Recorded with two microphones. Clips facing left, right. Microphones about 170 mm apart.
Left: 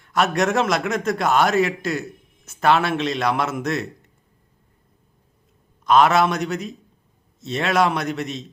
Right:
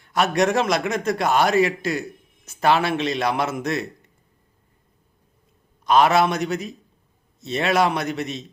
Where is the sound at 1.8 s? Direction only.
Centre (ahead or behind).